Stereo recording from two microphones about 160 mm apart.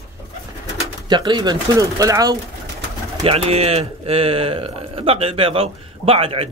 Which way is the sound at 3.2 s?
40° right (ahead or behind).